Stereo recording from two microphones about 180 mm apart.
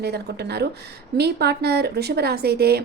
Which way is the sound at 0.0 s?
65° right (ahead or behind).